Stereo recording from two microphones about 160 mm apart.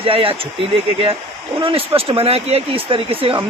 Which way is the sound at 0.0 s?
35° right (ahead or behind).